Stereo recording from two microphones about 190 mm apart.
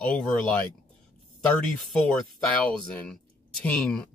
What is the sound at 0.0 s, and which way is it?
Speech, 5° left (ahead or behind).